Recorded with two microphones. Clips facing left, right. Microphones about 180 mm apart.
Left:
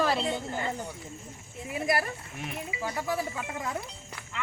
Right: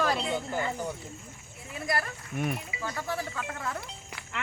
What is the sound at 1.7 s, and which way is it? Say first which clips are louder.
Speech: left 3 dB; 20° left (ahead or behind).